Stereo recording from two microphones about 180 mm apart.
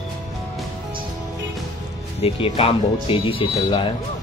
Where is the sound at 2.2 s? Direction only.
35° left (ahead or behind).